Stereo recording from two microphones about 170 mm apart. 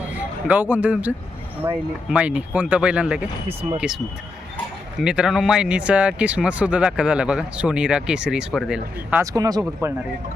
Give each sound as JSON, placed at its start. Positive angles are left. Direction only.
{"t": 0.2, "sound": "speech", "side_deg": -10}
{"t": 9.2, "sound": "speech", "side_deg": -20}